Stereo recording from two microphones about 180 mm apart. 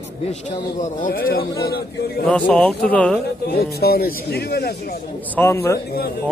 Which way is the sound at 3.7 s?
60° left (ahead or behind).